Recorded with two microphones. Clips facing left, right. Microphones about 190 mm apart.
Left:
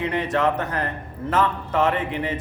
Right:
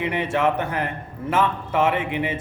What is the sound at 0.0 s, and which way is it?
A man's voice, 10° right (ahead or behind).